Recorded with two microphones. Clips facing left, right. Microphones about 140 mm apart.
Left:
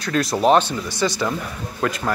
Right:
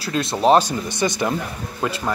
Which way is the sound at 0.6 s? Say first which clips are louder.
Even; 20° right (ahead or behind).